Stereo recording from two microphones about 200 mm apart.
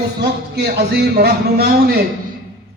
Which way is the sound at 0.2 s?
55° right (ahead or behind).